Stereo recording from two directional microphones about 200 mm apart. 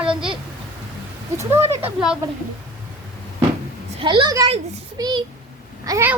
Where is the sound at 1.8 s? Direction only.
5° right (ahead or behind).